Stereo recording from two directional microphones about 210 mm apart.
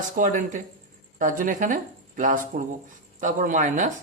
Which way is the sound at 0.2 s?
35° right (ahead or behind).